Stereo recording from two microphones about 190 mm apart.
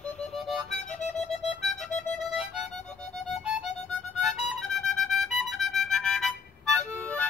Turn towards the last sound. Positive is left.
turn(degrees=5)  # may be behind; listen again after turning